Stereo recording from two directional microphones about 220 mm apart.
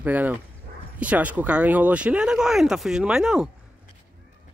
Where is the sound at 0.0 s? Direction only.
5° right (ahead or behind).